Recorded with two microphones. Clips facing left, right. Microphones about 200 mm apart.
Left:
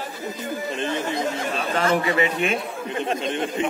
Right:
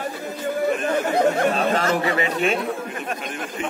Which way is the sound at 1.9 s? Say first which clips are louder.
Left 1 dB; 35° right (ahead or behind).